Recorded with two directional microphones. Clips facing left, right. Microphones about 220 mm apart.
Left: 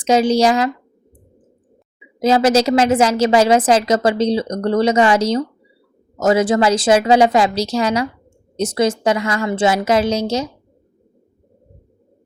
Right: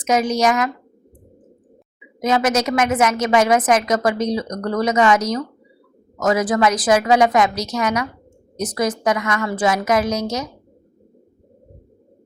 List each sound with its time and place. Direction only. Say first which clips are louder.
0.0 s a woman's voice: left 4 dB; 30° left (ahead or behind)
2.0 s a woman's voice: left 4 dB; 30° left (ahead or behind)